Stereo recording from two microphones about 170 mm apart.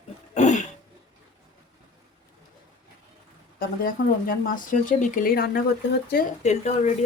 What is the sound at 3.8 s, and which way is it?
Speech, 55° left (ahead or behind).